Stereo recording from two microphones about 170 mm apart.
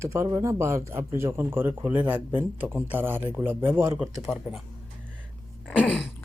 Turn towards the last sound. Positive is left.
turn(degrees=5)  # may be behind; listen again after turning